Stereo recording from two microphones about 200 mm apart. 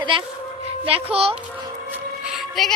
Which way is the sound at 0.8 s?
30° right (ahead or behind).